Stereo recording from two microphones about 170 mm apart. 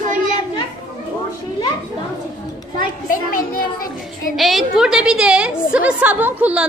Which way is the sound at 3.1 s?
55° left (ahead or behind).